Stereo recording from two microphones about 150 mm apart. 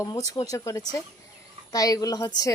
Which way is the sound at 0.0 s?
25° left (ahead or behind).